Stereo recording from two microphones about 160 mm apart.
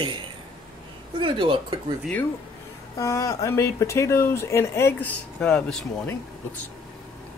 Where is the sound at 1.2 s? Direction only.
30° right (ahead or behind).